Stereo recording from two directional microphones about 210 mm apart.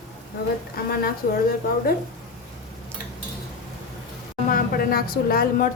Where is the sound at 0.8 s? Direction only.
45° left (ahead or behind).